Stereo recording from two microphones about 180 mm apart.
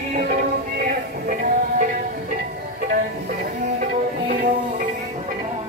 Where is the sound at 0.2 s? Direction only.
50° right (ahead or behind).